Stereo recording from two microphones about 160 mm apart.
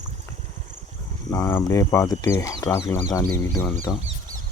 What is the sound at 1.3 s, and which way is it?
Speech, 15° left (ahead or behind).